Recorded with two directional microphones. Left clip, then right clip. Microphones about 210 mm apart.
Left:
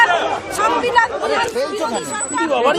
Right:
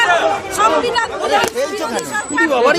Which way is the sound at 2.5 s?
30° right (ahead or behind).